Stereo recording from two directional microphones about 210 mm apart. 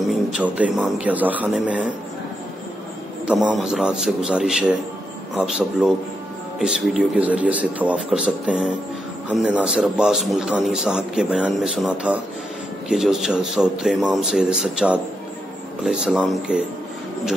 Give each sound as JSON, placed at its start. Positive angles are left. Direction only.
{"t": 0.0, "sound": "a man's voice", "side_deg": -5}
{"t": 3.3, "sound": "a man's voice", "side_deg": -5}